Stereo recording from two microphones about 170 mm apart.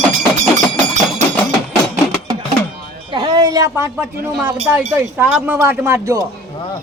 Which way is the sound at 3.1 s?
25° right (ahead or behind).